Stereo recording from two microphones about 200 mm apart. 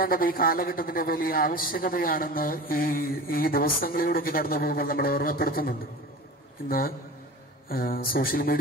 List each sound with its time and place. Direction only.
0.0 s a man's voice: 45° left (ahead or behind)
7.7 s a man's voice: 45° left (ahead or behind)